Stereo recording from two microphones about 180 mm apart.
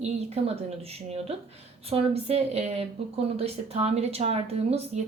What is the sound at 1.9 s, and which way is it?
Speech, 35° right (ahead or behind).